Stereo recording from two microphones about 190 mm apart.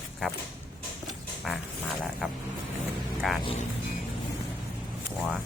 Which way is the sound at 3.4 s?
30° left (ahead or behind).